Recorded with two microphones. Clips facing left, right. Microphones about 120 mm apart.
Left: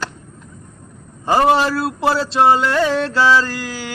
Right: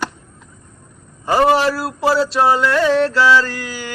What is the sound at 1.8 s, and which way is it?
Mantra, 25° left (ahead or behind).